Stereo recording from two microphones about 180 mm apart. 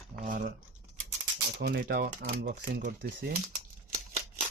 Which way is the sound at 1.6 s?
60° right (ahead or behind).